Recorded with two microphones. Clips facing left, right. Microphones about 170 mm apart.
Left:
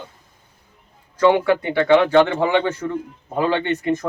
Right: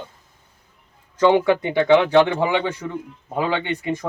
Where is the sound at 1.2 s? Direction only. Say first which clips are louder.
Even; 20° right (ahead or behind).